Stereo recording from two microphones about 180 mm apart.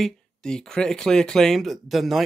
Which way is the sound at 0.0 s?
5° left (ahead or behind).